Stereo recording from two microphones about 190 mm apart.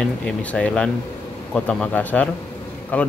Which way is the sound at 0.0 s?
5° left (ahead or behind).